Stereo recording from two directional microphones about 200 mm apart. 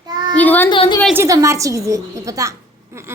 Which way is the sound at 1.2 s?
15° right (ahead or behind).